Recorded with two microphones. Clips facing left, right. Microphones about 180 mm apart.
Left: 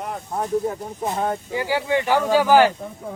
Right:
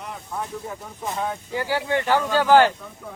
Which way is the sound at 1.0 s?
40° left (ahead or behind).